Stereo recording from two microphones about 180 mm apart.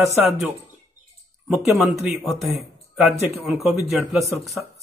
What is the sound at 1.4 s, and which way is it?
A man's voice, 5° right (ahead or behind).